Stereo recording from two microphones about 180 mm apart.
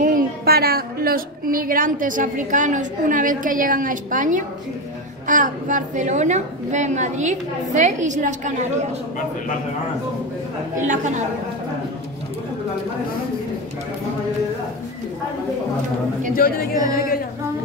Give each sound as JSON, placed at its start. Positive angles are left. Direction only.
{"t": 0.0, "sound": "a woman's voice", "side_deg": -55}
{"t": 10.8, "sound": "a woman's voice", "side_deg": -45}
{"t": 16.3, "sound": "a woman's voice", "side_deg": 55}